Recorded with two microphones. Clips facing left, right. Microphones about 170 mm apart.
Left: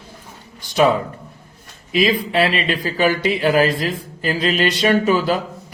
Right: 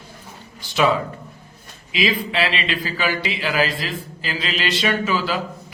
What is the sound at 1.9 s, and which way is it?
A man's voice, 45° left (ahead or behind).